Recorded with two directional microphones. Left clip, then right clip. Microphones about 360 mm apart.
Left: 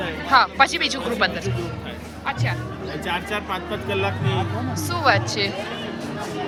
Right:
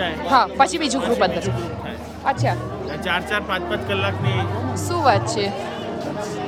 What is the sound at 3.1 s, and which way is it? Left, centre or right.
Speech, centre.